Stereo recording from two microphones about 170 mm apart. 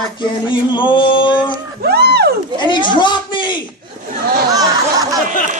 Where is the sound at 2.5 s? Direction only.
25° left (ahead or behind).